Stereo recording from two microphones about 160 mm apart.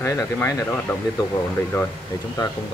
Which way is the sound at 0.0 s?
20° left (ahead or behind).